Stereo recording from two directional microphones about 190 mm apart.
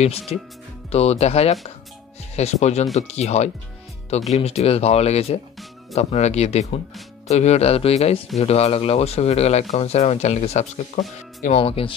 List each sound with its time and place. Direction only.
0.0 s speech: 35° left (ahead or behind)